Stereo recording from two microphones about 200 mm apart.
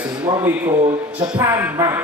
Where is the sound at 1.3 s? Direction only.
10° right (ahead or behind).